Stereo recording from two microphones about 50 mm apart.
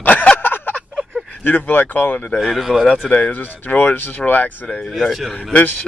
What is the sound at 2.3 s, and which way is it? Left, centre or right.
Speech, centre.